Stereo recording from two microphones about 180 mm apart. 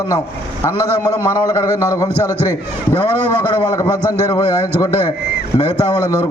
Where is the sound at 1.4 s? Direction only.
20° left (ahead or behind).